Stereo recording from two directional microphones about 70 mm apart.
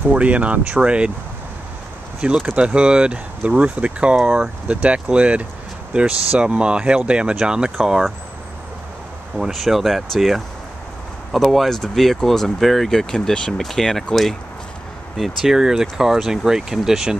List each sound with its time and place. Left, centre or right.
0.1 s speech: centre
2.1 s speech: centre
9.4 s speech: centre
15.1 s speech: centre